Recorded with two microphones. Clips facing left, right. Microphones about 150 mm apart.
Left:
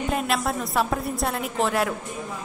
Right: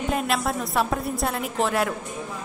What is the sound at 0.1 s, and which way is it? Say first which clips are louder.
A woman's voice: right 1 dB; centre (ahead or behind).